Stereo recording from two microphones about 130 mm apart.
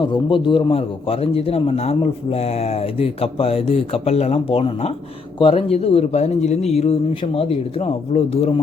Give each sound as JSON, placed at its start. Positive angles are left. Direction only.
{"t": 0.0, "sound": "a man's voice", "side_deg": 40}